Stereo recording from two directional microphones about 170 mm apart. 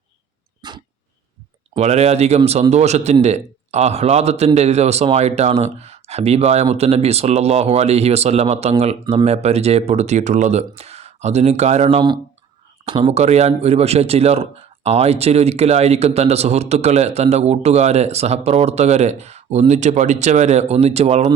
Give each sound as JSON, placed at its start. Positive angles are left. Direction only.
{"t": 0.6, "sound": "dog", "side_deg": -25}
{"t": 1.7, "sound": "a man's voice", "side_deg": -40}